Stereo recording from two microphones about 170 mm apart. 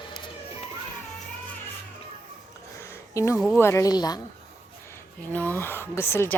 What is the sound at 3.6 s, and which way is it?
Speech, 15° left (ahead or behind).